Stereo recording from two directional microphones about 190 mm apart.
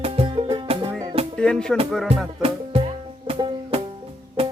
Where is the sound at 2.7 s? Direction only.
30° right (ahead or behind).